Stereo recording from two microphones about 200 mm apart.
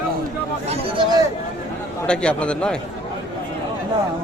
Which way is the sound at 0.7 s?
25° right (ahead or behind).